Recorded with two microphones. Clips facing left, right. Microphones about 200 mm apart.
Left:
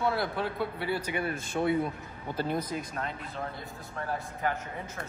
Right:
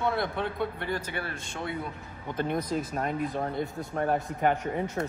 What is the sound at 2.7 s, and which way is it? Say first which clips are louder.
Speech: right 5 dB; 5° right (ahead or behind).